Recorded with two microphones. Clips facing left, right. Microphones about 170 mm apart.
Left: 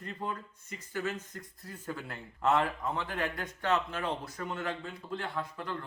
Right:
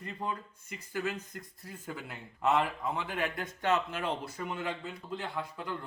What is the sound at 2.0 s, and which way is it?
Speech, 10° right (ahead or behind).